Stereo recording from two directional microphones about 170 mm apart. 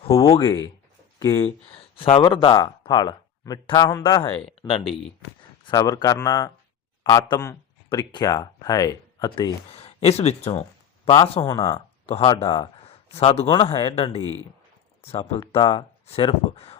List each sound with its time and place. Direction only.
0.3 s speech: 30° left (ahead or behind)
2.0 s speech: 30° left (ahead or behind)
5.6 s speech: 20° left (ahead or behind)
9.6 s a man's voice: 35° left (ahead or behind)
12.0 s speech: 35° left (ahead or behind)
15.2 s speech: 25° left (ahead or behind)